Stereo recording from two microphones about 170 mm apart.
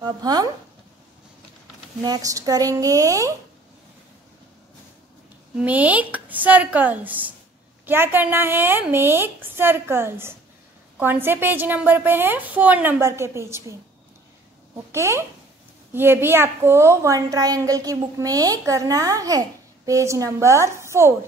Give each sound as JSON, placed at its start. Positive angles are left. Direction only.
{"t": 0.0, "sound": "a woman's voice", "side_deg": -25}
{"t": 2.0, "sound": "a woman's voice", "side_deg": -20}
{"t": 5.6, "sound": "a woman's voice", "side_deg": -10}
{"t": 14.9, "sound": "a woman's voice", "side_deg": -15}